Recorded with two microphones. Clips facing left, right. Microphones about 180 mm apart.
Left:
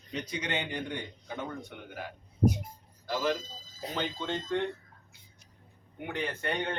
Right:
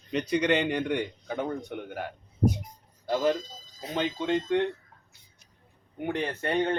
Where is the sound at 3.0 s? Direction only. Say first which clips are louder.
Right 5 dB; 35° right (ahead or behind).